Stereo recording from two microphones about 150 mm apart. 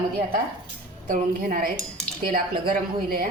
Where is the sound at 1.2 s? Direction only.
75° right (ahead or behind).